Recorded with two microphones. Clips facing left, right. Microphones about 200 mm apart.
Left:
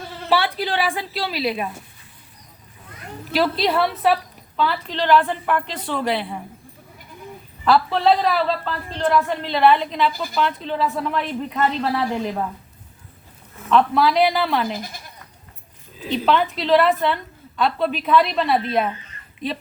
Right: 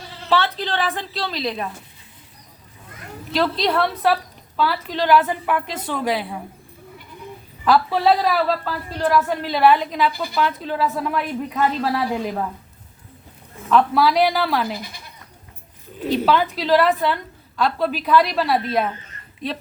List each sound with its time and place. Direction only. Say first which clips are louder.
0.0 s a sound: left 5 dB; 50° left (ahead or behind)
0.3 s a woman's voice: even; 10° left (ahead or behind)
3.3 s a woman's voice: even; 5° left (ahead or behind)
7.6 s a woman's voice: even; 5° right (ahead or behind)
13.7 s a woman's voice: even; 5° right (ahead or behind)
14.7 s speech: left 1 dB; 45° left (ahead or behind)
16.0 s speech: right 4 dB; 50° right (ahead or behind)
16.2 s a woman's voice: left 2 dB; centre (ahead or behind)